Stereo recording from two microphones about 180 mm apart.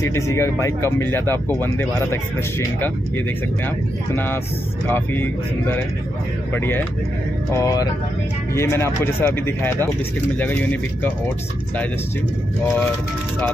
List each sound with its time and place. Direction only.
0.0 s speech: 15° left (ahead or behind)
4.1 s speech: 10° left (ahead or behind)